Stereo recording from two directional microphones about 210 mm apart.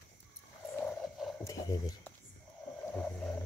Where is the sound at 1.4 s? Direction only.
15° left (ahead or behind).